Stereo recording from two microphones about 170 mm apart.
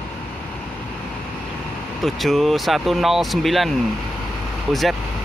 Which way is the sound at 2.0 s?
Centre (ahead or behind).